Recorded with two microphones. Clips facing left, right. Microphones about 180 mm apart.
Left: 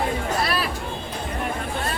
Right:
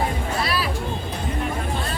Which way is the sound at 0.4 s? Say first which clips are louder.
Even; 55° left (ahead or behind).